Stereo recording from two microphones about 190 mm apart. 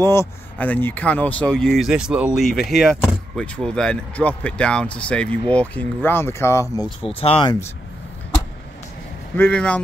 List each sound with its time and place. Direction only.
0.0 s speech: 15° left (ahead or behind)
7.0 s speech: 30° left (ahead or behind)
9.4 s speech: 5° left (ahead or behind)